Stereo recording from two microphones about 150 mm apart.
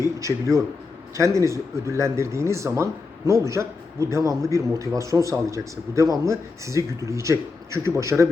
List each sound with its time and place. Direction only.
0.0 s speech: 20° right (ahead or behind)